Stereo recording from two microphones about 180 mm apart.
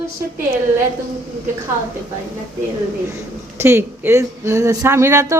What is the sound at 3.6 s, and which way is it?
A woman's voice, 15° right (ahead or behind).